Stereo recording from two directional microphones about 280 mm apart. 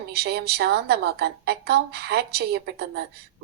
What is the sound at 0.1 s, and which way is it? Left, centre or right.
A woman's voice, right.